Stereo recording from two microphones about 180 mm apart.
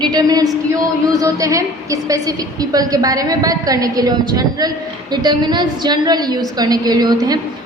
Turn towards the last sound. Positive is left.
turn(degrees=-20)  # may be behind; listen again after turning